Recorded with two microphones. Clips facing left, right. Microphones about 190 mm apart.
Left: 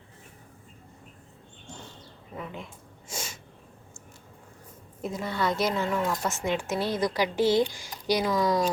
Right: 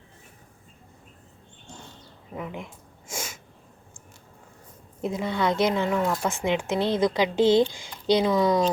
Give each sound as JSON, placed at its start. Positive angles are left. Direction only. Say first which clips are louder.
{"t": 2.3, "sound": "speech", "louder": "right 4 dB", "side_deg": -15}
{"t": 3.1, "sound": "sneeze", "louder": "right 2 dB", "side_deg": -10}
{"t": 5.0, "sound": "a woman's voice", "louder": "right 3 dB", "side_deg": -20}